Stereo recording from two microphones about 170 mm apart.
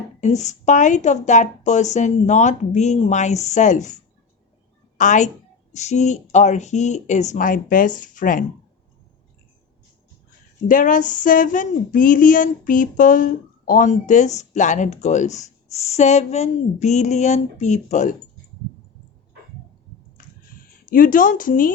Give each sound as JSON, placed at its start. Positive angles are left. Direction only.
{"t": 0.2, "sound": "speech", "side_deg": 45}
{"t": 4.9, "sound": "a woman's voice", "side_deg": 45}
{"t": 10.7, "sound": "speech", "side_deg": 50}
{"t": 20.1, "sound": "a sound", "side_deg": 55}